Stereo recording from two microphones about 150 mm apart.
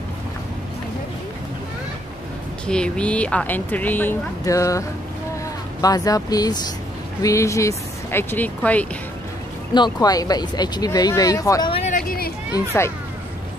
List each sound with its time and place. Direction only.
2.6 s speech: 5° left (ahead or behind)
9.8 s speech: 25° left (ahead or behind)